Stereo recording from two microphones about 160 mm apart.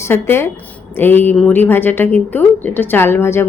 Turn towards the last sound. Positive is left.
turn(degrees=15)  # may be behind; listen again after turning